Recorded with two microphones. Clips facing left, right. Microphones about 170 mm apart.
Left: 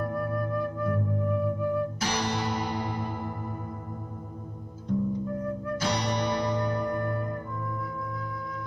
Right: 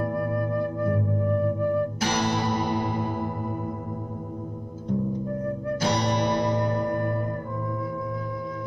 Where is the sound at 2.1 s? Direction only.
55° right (ahead or behind).